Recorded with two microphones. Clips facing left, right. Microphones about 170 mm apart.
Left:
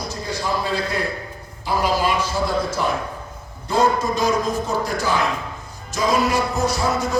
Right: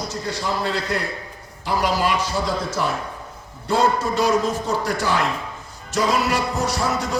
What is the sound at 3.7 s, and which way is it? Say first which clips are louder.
A man's voice: left 1 dB; 75° right (ahead or behind).